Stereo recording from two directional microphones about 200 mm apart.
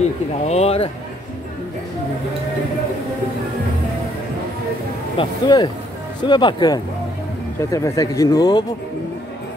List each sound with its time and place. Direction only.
0.5 s speech: 30° left (ahead or behind)
5.1 s speech: 25° left (ahead or behind)